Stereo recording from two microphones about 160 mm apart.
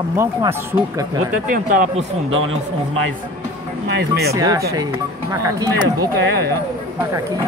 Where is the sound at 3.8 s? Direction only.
90° right.